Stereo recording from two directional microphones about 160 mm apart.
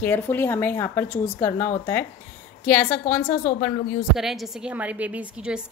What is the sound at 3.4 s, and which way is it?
Speech, 50° left (ahead or behind).